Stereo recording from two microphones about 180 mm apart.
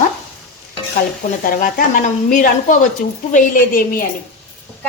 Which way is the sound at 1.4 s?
50° left (ahead or behind).